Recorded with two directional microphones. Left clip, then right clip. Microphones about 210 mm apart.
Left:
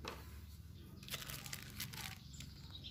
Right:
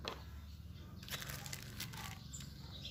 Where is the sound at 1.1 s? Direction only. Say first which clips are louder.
Right 1 dB; 20° left (ahead or behind).